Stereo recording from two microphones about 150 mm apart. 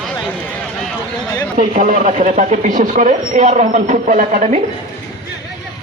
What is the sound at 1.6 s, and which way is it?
Speech, 60° right (ahead or behind).